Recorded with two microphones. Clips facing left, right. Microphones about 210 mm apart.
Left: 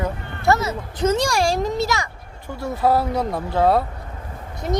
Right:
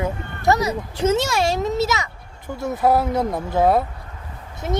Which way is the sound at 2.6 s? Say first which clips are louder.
Right 1 dB; 20° right (ahead or behind).